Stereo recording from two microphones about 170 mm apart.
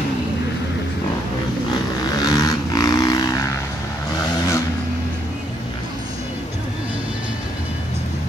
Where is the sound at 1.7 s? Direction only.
25° left (ahead or behind).